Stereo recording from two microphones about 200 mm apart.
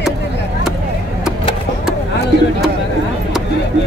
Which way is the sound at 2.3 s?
55° right (ahead or behind).